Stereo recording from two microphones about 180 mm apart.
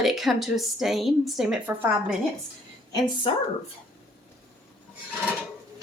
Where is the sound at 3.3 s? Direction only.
30° left (ahead or behind).